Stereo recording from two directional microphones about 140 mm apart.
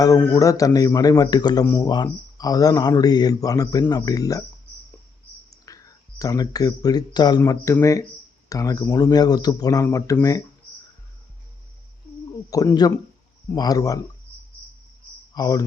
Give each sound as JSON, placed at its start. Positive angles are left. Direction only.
{"t": 0.0, "sound": "speech", "side_deg": 20}
{"t": 1.6, "sound": "speech", "side_deg": 20}
{"t": 1.9, "sound": "speech", "side_deg": 30}
{"t": 5.5, "sound": "speech", "side_deg": 25}
{"t": 12.5, "sound": "speech", "side_deg": 25}
{"t": 15.4, "sound": "speech", "side_deg": 25}